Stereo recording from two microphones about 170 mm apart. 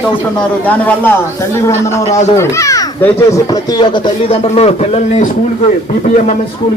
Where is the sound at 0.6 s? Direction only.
10° left (ahead or behind); by 5.3 s 40° left (ahead or behind).